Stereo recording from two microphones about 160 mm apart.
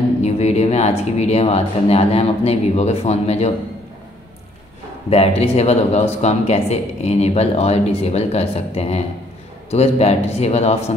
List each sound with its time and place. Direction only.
0.2 s speech: 45° left (ahead or behind)
5.1 s speech: 40° left (ahead or behind)